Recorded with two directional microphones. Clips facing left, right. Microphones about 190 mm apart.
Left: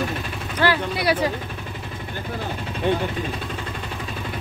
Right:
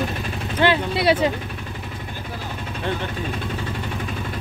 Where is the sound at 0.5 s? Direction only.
25° right (ahead or behind).